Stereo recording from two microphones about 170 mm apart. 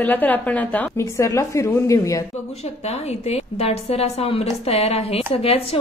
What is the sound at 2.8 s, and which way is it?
A woman's voice, 40° left (ahead or behind).